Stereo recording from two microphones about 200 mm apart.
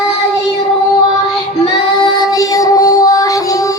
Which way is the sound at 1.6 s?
20° left (ahead or behind).